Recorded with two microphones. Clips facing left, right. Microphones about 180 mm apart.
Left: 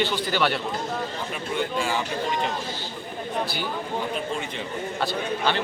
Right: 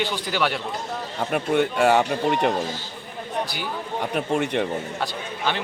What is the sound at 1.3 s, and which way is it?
Speech, 65° right (ahead or behind).